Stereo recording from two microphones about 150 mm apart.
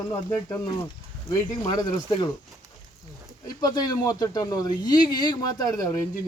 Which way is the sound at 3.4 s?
25° left (ahead or behind).